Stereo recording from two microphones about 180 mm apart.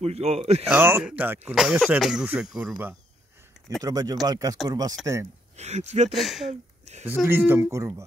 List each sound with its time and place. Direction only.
0.0 s speech: 35° right (ahead or behind)
0.7 s speech: 10° right (ahead or behind)
3.8 s speech: 20° right (ahead or behind)
5.6 s speech: 40° right (ahead or behind)
6.0 s speech: centre (ahead or behind)
7.1 s speech: 10° right (ahead or behind)